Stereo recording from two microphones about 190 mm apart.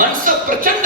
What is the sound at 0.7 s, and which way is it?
Speech, 45° right (ahead or behind).